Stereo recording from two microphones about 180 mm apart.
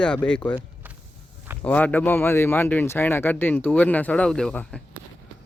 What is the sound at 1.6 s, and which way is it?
Speech, 10° left (ahead or behind).